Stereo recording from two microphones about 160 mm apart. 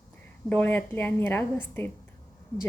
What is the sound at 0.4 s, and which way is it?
A woman's voice, 10° left (ahead or behind).